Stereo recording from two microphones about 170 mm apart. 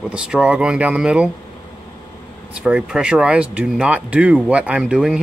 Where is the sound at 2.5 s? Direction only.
5° right (ahead or behind).